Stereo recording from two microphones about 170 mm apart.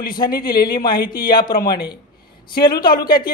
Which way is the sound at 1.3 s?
25° left (ahead or behind).